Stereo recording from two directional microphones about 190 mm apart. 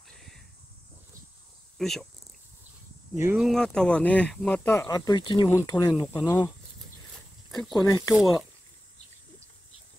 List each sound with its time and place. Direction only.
0.1 s a sound: centre (ahead or behind)
1.8 s speech: centre (ahead or behind)
3.2 s speech: 10° right (ahead or behind)
3.4 s speech: centre (ahead or behind)
4.8 s speech: 20° left (ahead or behind)
7.5 s speech: centre (ahead or behind)